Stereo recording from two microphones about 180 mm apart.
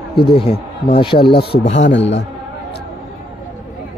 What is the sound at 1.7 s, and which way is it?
Speech, 90° left.